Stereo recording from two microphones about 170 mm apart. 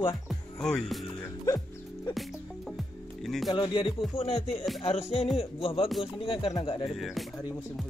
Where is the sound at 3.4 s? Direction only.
25° left (ahead or behind).